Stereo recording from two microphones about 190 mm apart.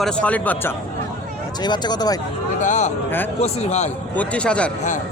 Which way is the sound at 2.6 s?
40° left (ahead or behind).